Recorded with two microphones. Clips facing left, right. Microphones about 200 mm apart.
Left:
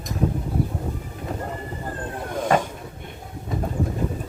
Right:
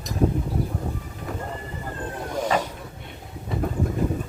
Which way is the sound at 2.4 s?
50° left (ahead or behind).